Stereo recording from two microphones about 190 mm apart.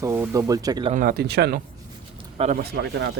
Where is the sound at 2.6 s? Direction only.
60° right (ahead or behind).